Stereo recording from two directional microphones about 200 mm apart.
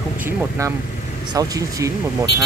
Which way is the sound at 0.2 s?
10° right (ahead or behind).